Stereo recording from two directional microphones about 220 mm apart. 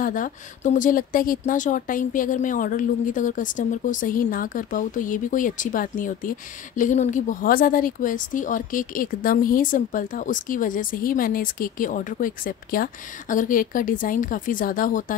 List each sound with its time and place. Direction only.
0.0 s speech: 35° left (ahead or behind)